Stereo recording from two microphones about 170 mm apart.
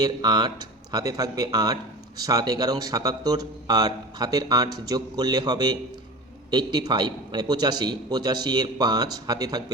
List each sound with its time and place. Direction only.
0.0 s speech: 25° right (ahead or behind)